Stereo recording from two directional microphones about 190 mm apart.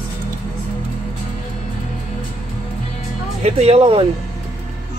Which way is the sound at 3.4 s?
30° right (ahead or behind).